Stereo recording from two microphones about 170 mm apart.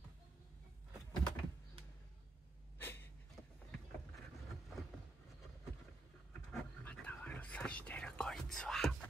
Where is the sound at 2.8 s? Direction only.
10° left (ahead or behind).